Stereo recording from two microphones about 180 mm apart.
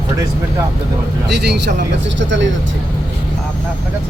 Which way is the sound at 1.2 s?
70° right (ahead or behind).